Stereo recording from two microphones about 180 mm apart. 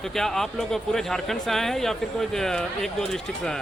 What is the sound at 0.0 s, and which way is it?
Speech, centre (ahead or behind).